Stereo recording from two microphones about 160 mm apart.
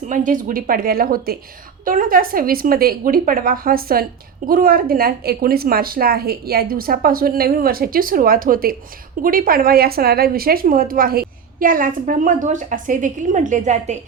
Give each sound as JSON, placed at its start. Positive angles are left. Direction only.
{"t": 0.1, "sound": "a woman's voice", "side_deg": -55}